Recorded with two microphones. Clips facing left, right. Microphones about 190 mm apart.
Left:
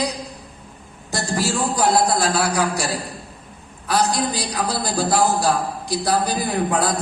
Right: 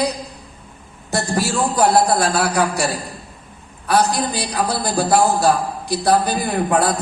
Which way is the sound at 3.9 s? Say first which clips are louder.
Right 3 dB; 60° right (ahead or behind).